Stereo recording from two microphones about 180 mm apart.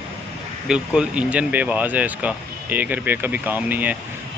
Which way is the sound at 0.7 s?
5° right (ahead or behind).